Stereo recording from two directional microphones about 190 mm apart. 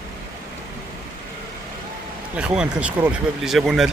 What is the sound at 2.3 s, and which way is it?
Speech, 5° right (ahead or behind).